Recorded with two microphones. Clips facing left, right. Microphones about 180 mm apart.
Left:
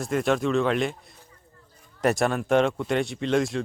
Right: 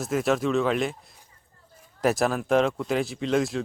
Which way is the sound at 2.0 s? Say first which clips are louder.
Even; centre (ahead or behind).